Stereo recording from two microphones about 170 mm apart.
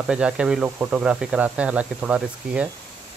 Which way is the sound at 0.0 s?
5° right (ahead or behind).